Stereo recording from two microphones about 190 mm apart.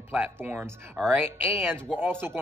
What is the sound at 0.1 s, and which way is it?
Speech, 10° right (ahead or behind).